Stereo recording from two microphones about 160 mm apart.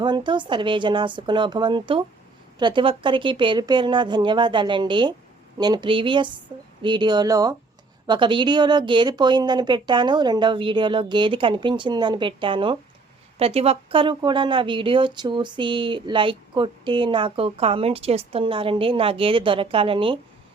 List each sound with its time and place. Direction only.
0.0 s a woman's voice: 30° right (ahead or behind)